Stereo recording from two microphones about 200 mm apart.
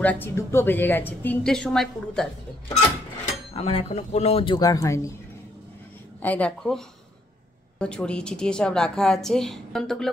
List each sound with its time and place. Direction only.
0.0 s a woman's voice: 10° left (ahead or behind)
3.5 s speech: 30° left (ahead or behind); by 5.1 s 15° left (ahead or behind)
6.2 s a woman's voice: 5° left (ahead or behind)
7.8 s a woman's voice: 5° left (ahead or behind)